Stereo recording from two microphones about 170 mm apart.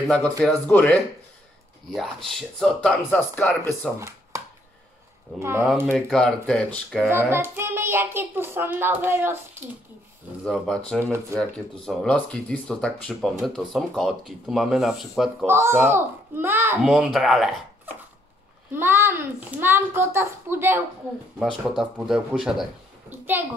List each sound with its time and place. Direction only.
0.4 s speech: 10° left (ahead or behind)
2.0 s speech: centre (ahead or behind)
5.4 s speech: 15° right (ahead or behind)
5.9 s speech: 5° left (ahead or behind)
7.1 s speech: 15° right (ahead or behind)
10.4 s speech: 5° left (ahead or behind)
11.0 s speech: 15° right (ahead or behind)
11.8 s speech: centre (ahead or behind)
15.4 s speech: 15° right (ahead or behind)
16.9 s speech: centre (ahead or behind)
18.7 s speech: 15° right (ahead or behind)
21.4 s speech: centre (ahead or behind)